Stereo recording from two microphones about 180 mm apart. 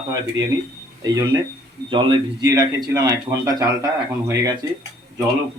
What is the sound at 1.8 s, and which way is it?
Speech, 25° right (ahead or behind).